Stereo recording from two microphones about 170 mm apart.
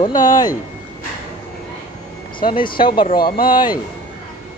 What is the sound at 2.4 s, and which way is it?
Speech, 30° left (ahead or behind).